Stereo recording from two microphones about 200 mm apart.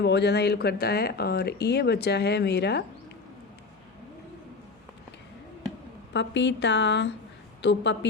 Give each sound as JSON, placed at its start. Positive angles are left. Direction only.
{"t": 0.0, "sound": "speech", "side_deg": 55}
{"t": 6.1, "sound": "speech", "side_deg": 60}